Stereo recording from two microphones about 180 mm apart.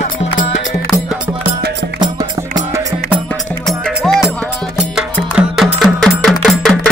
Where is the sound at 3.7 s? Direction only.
Centre (ahead or behind).